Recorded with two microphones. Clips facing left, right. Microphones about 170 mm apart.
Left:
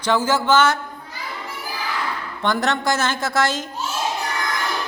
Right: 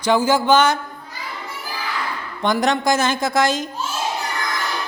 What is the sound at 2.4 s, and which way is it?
A woman's voice, 15° right (ahead or behind).